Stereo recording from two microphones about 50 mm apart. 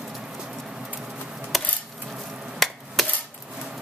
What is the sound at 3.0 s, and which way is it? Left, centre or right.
Chopping, centre.